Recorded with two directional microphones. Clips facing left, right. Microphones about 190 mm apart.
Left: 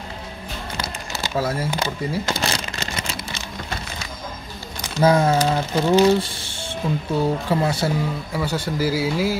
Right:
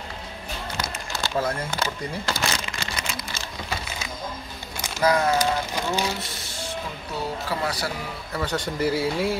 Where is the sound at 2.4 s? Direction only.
30° left (ahead or behind).